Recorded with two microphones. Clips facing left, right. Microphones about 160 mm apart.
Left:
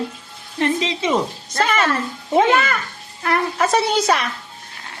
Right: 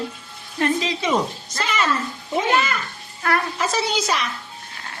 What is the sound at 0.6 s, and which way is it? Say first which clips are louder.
Speech: left 2 dB; 25° left (ahead or behind).